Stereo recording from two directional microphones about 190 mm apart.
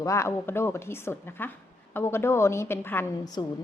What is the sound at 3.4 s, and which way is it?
Speech, 20° left (ahead or behind).